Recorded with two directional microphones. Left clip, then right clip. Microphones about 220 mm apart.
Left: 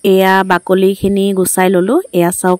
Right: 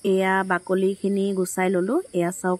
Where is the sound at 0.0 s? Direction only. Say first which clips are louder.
Left 12 dB; 45° left (ahead or behind).